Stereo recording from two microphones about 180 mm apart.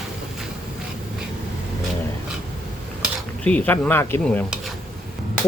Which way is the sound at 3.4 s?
5° left (ahead or behind).